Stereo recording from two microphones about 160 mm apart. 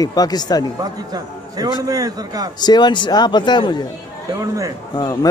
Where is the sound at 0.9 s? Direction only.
25° right (ahead or behind).